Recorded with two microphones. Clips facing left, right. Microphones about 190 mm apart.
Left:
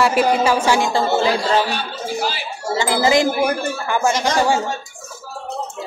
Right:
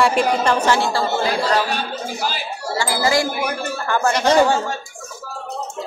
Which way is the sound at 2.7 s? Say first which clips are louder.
Left 3 dB; 20° left (ahead or behind).